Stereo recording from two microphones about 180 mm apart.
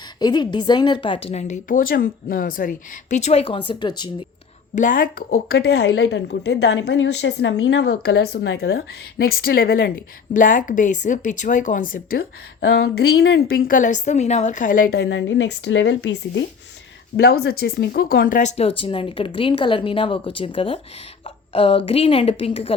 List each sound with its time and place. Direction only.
0.2 s a woman's voice: 25° left (ahead or behind)
4.7 s a woman's voice: 45° left (ahead or behind); by 16.5 s 80° left
17.2 s a woman's voice: 60° left (ahead or behind); by 22.7 s 30° left (ahead or behind)